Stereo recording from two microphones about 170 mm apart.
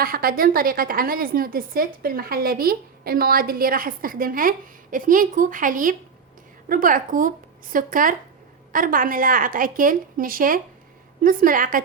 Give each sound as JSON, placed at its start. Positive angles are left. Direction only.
{"t": 0.0, "sound": "a woman's voice", "side_deg": -60}